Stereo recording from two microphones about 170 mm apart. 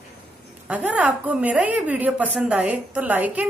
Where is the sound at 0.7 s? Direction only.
10° right (ahead or behind).